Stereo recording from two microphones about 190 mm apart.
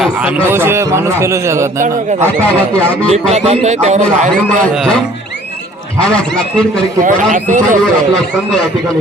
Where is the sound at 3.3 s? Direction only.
35° right (ahead or behind).